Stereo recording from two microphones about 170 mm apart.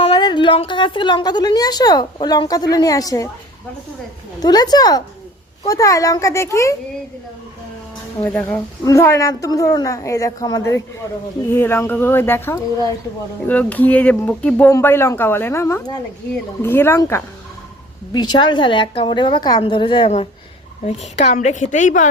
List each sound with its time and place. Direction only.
0.0 s a woman's voice: 25° left (ahead or behind)
4.4 s a woman's voice: 25° left (ahead or behind)
8.2 s a woman's voice: 10° left (ahead or behind)
18.1 s a woman's voice: 25° left (ahead or behind); by 22.1 s 45° left (ahead or behind)